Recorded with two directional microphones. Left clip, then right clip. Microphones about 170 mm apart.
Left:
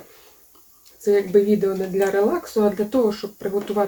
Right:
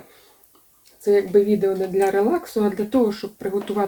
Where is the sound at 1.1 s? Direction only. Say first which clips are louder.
Even; 15° right (ahead or behind).